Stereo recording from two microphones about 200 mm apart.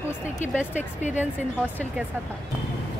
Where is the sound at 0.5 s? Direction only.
5° right (ahead or behind).